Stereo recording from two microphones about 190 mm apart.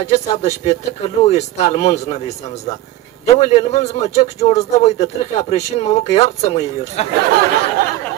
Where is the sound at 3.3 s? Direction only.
35° left (ahead or behind).